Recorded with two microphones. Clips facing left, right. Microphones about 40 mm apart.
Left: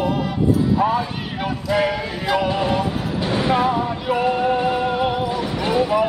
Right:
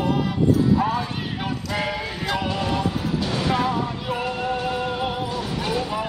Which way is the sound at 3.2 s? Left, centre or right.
Left.